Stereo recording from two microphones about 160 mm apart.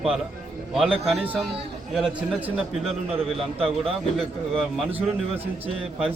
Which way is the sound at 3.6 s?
Centre (ahead or behind).